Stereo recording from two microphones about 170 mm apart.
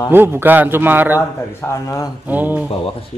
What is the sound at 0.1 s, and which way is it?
A man's voice, 10° right (ahead or behind).